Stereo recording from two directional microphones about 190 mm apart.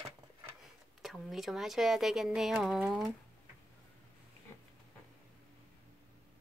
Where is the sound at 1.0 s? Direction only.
Centre (ahead or behind).